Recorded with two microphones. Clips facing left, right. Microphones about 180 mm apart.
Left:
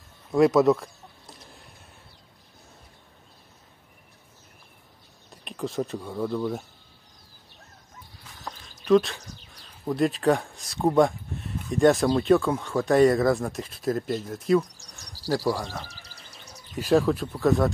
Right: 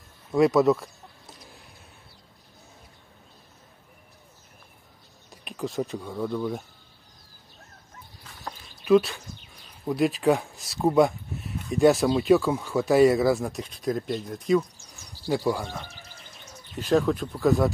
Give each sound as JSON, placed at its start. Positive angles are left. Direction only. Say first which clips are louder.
{"t": 0.3, "sound": "a sound", "louder": "left 1 dB", "side_deg": 0}
{"t": 5.3, "sound": "speech", "louder": "even", "side_deg": 0}
{"t": 8.8, "sound": "speech", "louder": "even", "side_deg": -5}
{"t": 15.9, "sound": "music", "louder": "right 2 dB", "side_deg": 35}
{"t": 16.7, "sound": "speech", "louder": "left 1 dB", "side_deg": 10}